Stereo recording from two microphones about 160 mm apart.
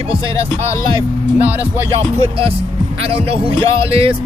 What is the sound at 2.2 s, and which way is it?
Speech, 35° right (ahead or behind).